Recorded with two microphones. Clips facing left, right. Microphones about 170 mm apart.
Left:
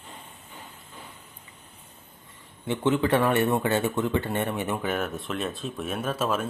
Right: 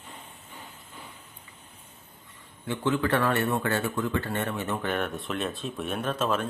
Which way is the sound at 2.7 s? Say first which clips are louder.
Left 3 dB; 20° left (ahead or behind).